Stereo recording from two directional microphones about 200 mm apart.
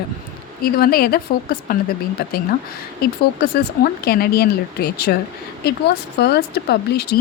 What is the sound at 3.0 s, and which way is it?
Speech, 50° left (ahead or behind).